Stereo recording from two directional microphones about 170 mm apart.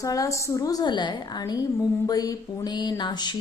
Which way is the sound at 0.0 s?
20° left (ahead or behind).